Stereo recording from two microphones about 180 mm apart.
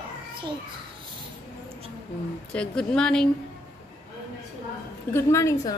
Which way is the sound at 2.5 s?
5° left (ahead or behind).